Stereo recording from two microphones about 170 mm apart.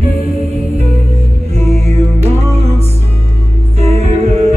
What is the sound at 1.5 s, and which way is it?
Music, 40° right (ahead or behind).